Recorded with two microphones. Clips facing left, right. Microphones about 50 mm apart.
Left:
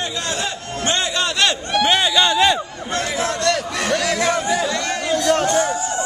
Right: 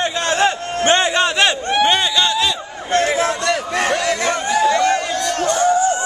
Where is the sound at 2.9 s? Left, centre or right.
Right.